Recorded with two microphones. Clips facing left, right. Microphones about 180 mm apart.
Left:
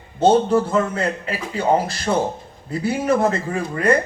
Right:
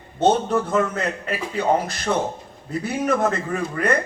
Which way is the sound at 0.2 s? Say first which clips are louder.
Left 4 dB; 30° left (ahead or behind).